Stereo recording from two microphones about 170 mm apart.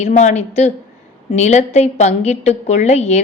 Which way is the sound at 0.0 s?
45° left (ahead or behind).